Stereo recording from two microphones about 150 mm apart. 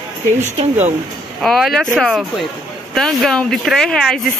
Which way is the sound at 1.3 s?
Centre (ahead or behind).